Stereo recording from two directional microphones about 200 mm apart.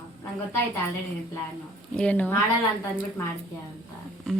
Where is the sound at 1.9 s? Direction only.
5° left (ahead or behind).